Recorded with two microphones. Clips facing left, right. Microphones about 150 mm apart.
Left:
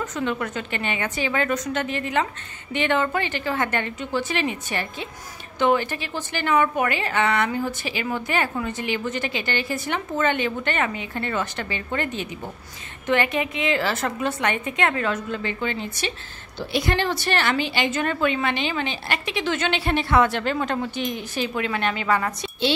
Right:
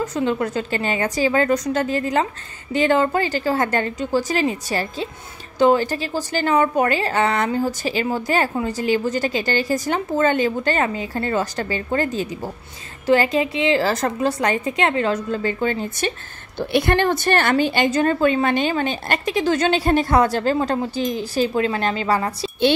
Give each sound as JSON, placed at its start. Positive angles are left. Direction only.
{"t": 0.0, "sound": "a woman's voice", "side_deg": -35}
{"t": 16.5, "sound": "a woman's voice", "side_deg": -55}